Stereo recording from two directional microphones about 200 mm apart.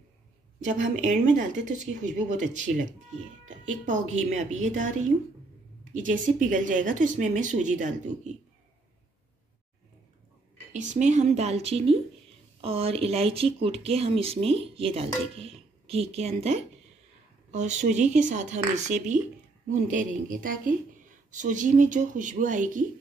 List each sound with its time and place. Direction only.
0.7 s speech: 40° right (ahead or behind)
10.7 s speech: 35° right (ahead or behind)